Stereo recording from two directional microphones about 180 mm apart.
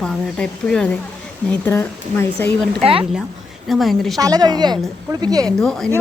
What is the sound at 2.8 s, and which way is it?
Speech, 30° right (ahead or behind).